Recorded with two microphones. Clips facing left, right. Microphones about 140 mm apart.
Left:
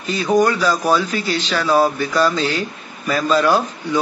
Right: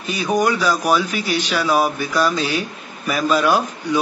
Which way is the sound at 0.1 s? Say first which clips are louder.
Left 3 dB; 15° right (ahead or behind).